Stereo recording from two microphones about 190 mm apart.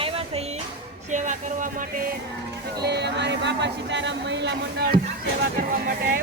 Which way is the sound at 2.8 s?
60° right (ahead or behind).